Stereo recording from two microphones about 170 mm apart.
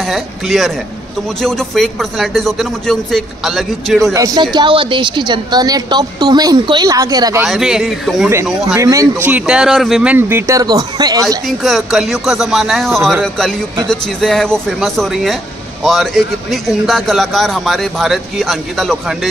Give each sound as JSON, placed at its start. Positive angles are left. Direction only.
{"t": 0.0, "sound": "a man's voice", "side_deg": 0}
{"t": 4.1, "sound": "a woman's voice", "side_deg": -20}
{"t": 7.4, "sound": "a man's voice", "side_deg": 0}
{"t": 8.7, "sound": "a woman's voice", "side_deg": -20}
{"t": 9.3, "sound": "speech", "side_deg": -5}
{"t": 11.4, "sound": "a man's voice", "side_deg": 0}